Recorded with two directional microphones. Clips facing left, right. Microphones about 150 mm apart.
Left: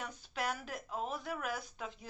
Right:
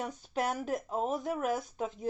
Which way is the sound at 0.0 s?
45° right (ahead or behind).